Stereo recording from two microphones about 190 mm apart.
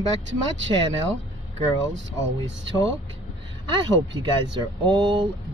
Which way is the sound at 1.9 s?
75° right (ahead or behind).